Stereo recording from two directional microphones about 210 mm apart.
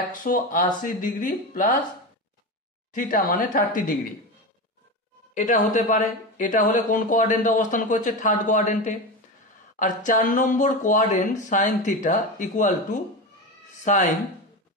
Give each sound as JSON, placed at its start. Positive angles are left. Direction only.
{"t": 0.1, "sound": "speech", "side_deg": 40}
{"t": 2.9, "sound": "speech", "side_deg": 40}
{"t": 5.3, "sound": "speech", "side_deg": 35}